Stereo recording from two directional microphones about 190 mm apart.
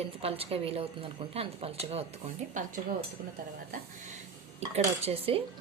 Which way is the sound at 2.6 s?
45° right (ahead or behind).